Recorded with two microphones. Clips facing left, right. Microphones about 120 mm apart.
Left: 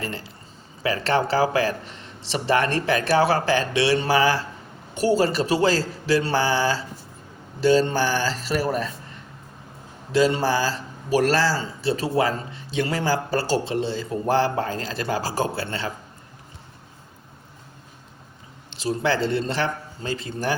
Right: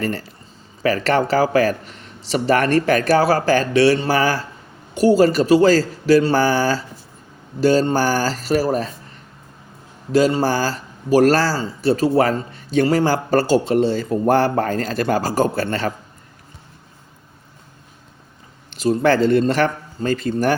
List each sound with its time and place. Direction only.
0.0 s speech: 50° right (ahead or behind)
10.1 s speech: 40° right (ahead or behind)
18.8 s speech: 50° right (ahead or behind)